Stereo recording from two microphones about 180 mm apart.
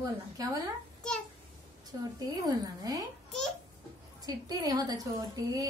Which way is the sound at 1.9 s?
20° right (ahead or behind).